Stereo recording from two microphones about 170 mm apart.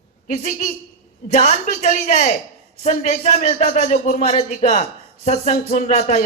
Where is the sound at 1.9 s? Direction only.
45° left (ahead or behind).